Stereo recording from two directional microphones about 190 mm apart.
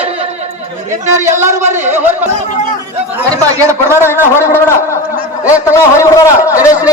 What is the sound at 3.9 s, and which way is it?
Speech, 15° left (ahead or behind).